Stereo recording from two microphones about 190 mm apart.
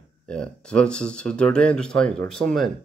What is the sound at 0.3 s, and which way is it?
Speech, 5° left (ahead or behind).